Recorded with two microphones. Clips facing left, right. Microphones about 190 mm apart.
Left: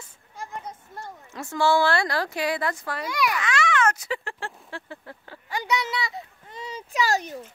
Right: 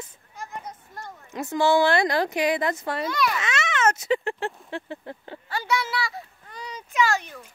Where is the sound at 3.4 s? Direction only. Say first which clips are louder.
Left 2 dB; 20° right (ahead or behind).